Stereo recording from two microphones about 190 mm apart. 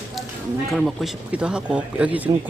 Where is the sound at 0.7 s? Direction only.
Centre (ahead or behind).